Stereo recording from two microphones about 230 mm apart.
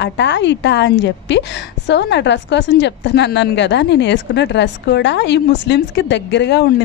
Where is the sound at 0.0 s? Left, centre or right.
Left.